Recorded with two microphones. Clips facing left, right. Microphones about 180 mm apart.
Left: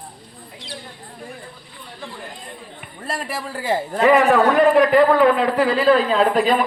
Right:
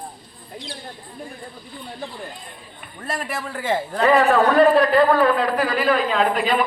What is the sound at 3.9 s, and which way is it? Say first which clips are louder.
A man's voice: left 2 dB; 20° left (ahead or behind).